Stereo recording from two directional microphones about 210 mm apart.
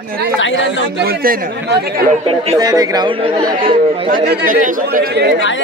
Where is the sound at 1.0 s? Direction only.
50° right (ahead or behind).